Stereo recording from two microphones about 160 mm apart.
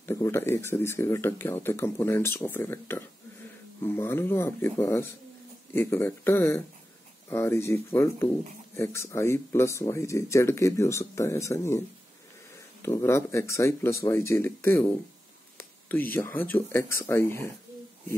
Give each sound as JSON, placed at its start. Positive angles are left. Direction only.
{"t": 0.0, "sound": "speech", "side_deg": 15}
{"t": 12.8, "sound": "speech", "side_deg": 15}
{"t": 15.9, "sound": "speech", "side_deg": 10}